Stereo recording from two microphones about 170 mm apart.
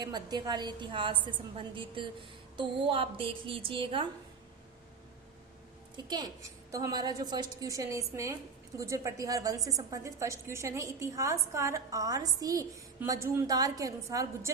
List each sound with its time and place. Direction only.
0.0 s a woman's voice: 25° right (ahead or behind)
6.0 s a woman's voice: 25° right (ahead or behind)